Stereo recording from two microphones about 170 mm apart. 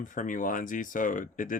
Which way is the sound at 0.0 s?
50° left (ahead or behind).